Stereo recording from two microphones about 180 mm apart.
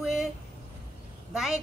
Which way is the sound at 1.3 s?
Centre (ahead or behind).